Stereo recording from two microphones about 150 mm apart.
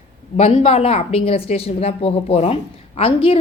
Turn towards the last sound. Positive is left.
turn(degrees=40)  # may be behind; listen again after turning